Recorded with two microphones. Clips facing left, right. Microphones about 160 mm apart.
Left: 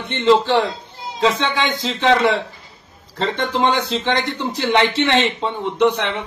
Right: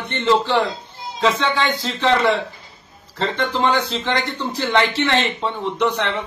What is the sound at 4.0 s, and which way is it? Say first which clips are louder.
A man's voice: left 2 dB; 20° left (ahead or behind).